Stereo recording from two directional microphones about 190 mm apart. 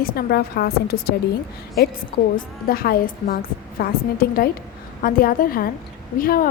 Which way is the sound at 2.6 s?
50° left (ahead or behind).